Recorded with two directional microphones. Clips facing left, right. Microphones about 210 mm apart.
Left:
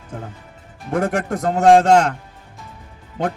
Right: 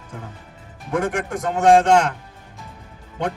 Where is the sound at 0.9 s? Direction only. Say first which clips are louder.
Left 2 dB; 35° left (ahead or behind).